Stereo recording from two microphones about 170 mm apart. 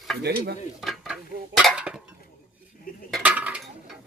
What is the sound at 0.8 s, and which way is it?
Cutlery, centre (ahead or behind).